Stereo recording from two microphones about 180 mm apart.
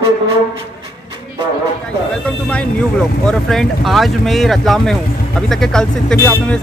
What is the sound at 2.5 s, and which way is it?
Speech, 5° left (ahead or behind).